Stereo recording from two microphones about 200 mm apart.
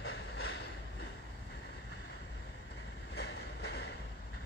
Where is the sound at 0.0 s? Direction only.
75° left (ahead or behind).